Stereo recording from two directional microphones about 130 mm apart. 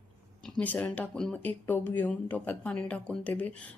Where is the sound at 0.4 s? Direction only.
10° left (ahead or behind).